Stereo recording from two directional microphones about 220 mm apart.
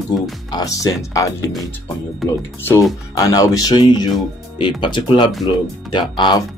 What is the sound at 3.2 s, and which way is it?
Speech, 15° left (ahead or behind).